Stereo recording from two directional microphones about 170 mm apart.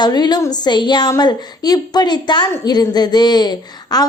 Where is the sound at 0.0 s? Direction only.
25° left (ahead or behind).